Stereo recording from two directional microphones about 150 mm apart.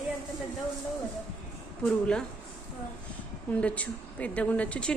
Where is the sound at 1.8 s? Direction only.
5° left (ahead or behind).